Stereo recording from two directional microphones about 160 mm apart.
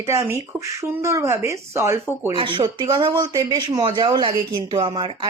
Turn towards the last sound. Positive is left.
turn(degrees=-30)  # may be behind; listen again after turning